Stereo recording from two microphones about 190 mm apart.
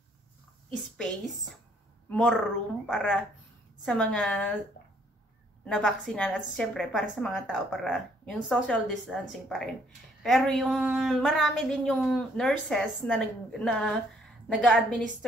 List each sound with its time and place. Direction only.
0.9 s a woman's voice: centre (ahead or behind)
5.7 s a woman's voice: 5° left (ahead or behind)